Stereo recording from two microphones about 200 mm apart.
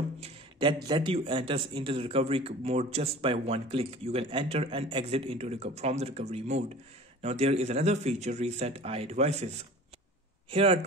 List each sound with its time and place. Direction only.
0.2 s speech: 25° right (ahead or behind)
10.5 s speech: 30° right (ahead or behind)